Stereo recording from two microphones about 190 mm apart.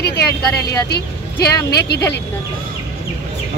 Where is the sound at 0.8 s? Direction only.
60° left (ahead or behind).